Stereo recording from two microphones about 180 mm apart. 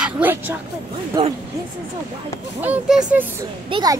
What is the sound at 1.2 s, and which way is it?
Speech, 25° right (ahead or behind).